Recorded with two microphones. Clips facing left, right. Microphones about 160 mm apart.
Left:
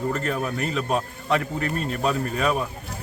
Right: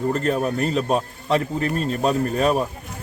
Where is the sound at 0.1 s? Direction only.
35° right (ahead or behind).